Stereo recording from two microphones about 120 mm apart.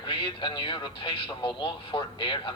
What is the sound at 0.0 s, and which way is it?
A man's voice, 45° left (ahead or behind).